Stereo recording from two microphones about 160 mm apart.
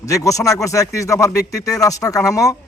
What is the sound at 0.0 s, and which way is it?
Speech, 20° left (ahead or behind).